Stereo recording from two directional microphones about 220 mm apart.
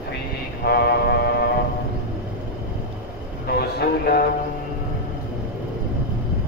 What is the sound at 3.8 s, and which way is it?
Speech, 45° left (ahead or behind).